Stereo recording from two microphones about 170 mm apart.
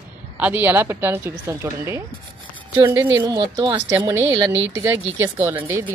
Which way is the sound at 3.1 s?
25° right (ahead or behind).